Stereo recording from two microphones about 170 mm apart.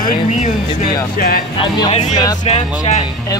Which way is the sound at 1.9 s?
40° left (ahead or behind).